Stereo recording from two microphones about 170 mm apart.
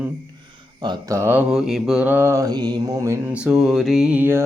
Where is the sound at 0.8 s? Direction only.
20° right (ahead or behind).